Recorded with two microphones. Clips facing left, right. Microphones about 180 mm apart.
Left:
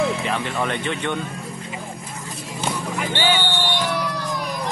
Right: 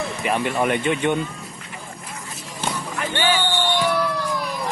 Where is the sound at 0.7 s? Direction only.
15° right (ahead or behind).